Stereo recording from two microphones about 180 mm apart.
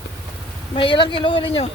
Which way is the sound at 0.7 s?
25° left (ahead or behind).